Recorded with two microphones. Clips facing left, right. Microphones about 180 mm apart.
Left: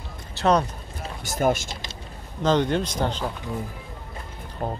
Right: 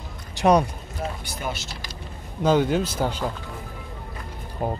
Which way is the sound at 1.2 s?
45° left (ahead or behind).